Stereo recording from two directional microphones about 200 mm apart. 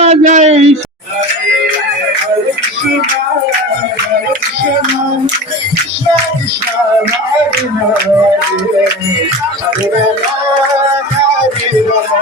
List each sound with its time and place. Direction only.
0.0 s speech: 35° right (ahead or behind)